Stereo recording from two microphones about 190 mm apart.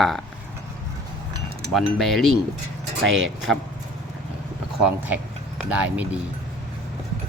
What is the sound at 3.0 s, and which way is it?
Speech, 90° right.